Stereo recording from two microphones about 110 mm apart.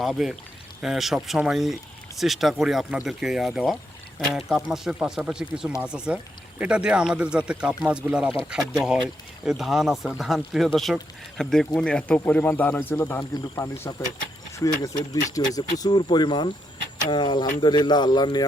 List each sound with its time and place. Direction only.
0.0 s speech: centre (ahead or behind); by 13.9 s 20° left (ahead or behind)
14.5 s speech: 35° left (ahead or behind)